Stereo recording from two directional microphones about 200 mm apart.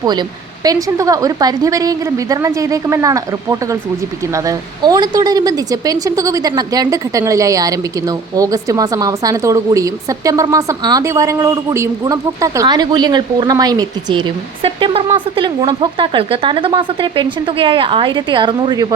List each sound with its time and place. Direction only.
0.0 s a woman's voice: 20° right (ahead or behind)